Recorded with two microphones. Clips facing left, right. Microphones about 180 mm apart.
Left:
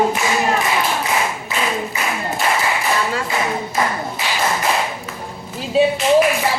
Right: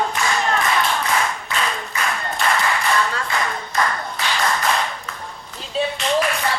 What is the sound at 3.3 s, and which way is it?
Clapping, 20° left (ahead or behind).